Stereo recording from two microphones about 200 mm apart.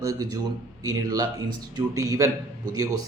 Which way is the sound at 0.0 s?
20° right (ahead or behind).